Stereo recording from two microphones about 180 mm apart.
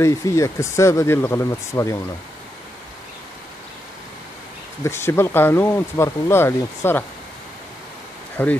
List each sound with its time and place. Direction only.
0.0 s speech: 15° left (ahead or behind)
4.8 s speech: 15° left (ahead or behind)
8.4 s speech: 10° left (ahead or behind)